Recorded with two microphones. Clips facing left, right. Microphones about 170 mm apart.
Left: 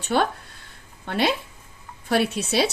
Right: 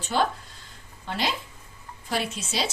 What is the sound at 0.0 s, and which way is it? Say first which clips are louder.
A woman's voice: left 3 dB; 65° left (ahead or behind).